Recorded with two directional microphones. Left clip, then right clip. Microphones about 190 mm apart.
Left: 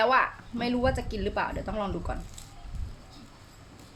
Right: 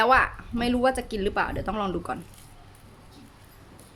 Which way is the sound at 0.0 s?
30° right (ahead or behind).